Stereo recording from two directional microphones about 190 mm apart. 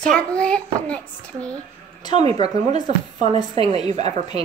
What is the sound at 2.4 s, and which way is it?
Speech, 35° right (ahead or behind).